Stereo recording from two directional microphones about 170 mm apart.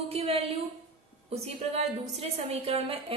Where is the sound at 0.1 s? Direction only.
35° right (ahead or behind).